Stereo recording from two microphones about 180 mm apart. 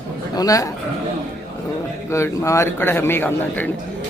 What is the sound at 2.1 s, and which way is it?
A man's voice, 15° left (ahead or behind).